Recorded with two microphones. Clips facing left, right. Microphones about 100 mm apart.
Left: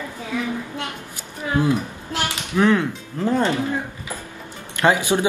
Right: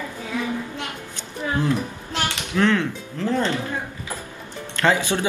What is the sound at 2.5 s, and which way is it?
Speech, 15° left (ahead or behind).